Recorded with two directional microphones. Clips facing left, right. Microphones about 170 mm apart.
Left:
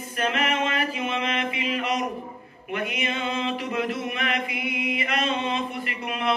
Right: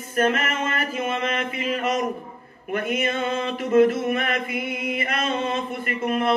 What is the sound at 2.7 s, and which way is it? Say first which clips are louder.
Mantra: right 4 dB; 45° right (ahead or behind).